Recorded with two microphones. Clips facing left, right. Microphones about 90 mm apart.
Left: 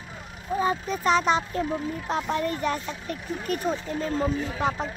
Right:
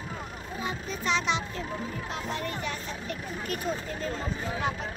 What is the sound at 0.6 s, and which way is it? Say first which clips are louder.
Speech: left 8 dB; 45° left (ahead or behind).